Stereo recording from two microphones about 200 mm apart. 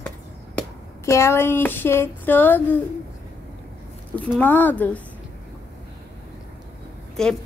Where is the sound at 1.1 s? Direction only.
15° left (ahead or behind).